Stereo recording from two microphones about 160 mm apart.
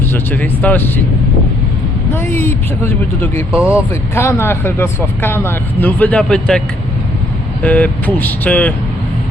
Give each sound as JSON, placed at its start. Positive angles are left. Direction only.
{"t": 0.1, "sound": "speech", "side_deg": 10}
{"t": 2.1, "sound": "speech", "side_deg": 15}
{"t": 3.5, "sound": "speech", "side_deg": -10}
{"t": 4.1, "sound": "speech", "side_deg": 15}
{"t": 7.6, "sound": "speech", "side_deg": 10}